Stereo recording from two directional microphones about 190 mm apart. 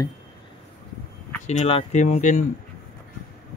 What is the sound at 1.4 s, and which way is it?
Speech, 40° left (ahead or behind).